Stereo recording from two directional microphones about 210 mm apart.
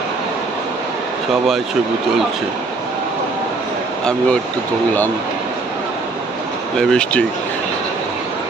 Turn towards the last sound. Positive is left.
turn(degrees=5)  # may be behind; listen again after turning